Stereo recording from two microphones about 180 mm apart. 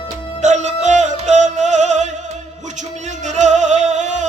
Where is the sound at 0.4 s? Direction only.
40° right (ahead or behind).